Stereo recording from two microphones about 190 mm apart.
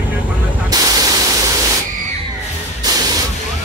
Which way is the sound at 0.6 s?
20° right (ahead or behind).